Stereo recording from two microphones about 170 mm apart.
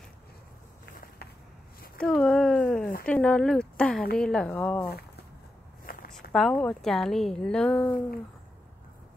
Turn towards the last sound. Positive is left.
turn(degrees=5)  # may be behind; listen again after turning